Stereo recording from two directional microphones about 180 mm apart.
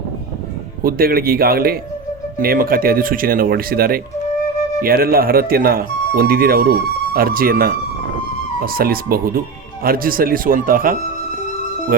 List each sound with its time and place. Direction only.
0.8 s speech: 55° right (ahead or behind)